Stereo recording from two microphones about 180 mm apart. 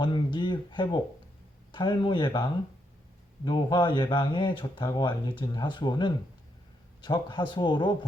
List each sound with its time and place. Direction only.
0.0 s speech: 25° left (ahead or behind)